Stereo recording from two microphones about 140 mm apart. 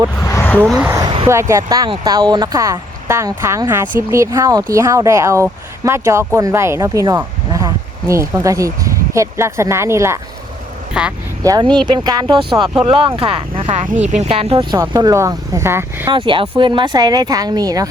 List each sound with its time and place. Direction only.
0.2 s a sound: 20° left (ahead or behind)
0.9 s a sound: 25° right (ahead or behind)
1.3 s speech: 20° right (ahead or behind)
11.0 s speech: 5° right (ahead or behind)
11.4 s speech: 30° right (ahead or behind)
12.5 s speech: 5° right (ahead or behind)
12.9 s speech: 40° right (ahead or behind)
14.8 s speech: 25° right (ahead or behind)
16.0 s speech: 35° right (ahead or behind)